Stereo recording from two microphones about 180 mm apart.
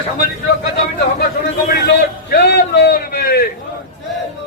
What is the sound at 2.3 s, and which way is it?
A man's voice, 65° left (ahead or behind).